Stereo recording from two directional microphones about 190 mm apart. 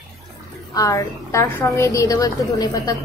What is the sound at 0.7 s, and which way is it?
A woman's voice, 15° left (ahead or behind).